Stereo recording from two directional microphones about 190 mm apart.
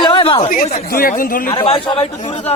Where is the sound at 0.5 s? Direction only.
50° left (ahead or behind).